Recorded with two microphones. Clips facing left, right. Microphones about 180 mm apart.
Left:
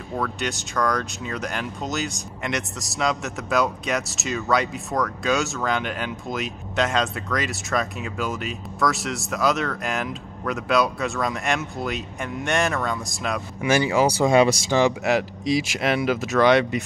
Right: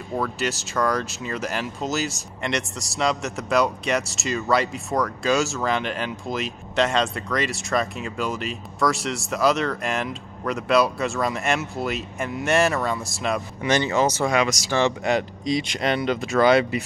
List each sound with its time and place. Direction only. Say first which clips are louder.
0.2 s speech: right 1 dB; 5° right (ahead or behind)
13.6 s speech: left 2 dB; 10° left (ahead or behind)
14.3 s speech: left 5 dB; 30° left (ahead or behind)
14.7 s speech: left 2 dB; 15° left (ahead or behind)
15.0 s speech: left 1 dB; 5° left (ahead or behind)